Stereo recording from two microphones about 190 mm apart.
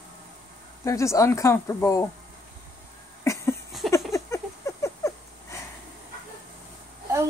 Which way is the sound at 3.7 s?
Centre (ahead or behind).